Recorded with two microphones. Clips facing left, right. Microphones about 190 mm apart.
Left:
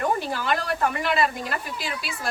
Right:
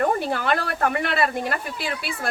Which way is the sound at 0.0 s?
55° right (ahead or behind).